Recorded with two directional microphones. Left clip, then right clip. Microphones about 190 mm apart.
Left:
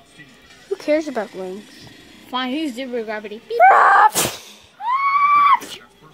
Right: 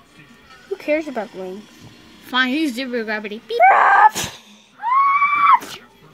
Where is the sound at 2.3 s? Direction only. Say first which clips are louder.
Right 5 dB; 45° right (ahead or behind).